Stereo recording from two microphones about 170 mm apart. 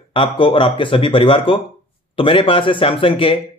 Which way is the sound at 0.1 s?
30° left (ahead or behind).